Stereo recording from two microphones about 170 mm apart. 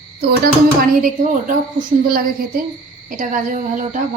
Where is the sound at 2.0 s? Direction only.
60° right (ahead or behind).